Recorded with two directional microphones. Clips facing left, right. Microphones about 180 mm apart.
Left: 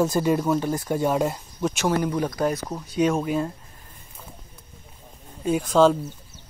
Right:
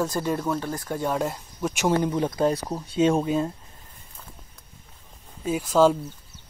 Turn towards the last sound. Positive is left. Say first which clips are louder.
# left 1 dB
turn(degrees=-5)  # may be behind; listen again after turning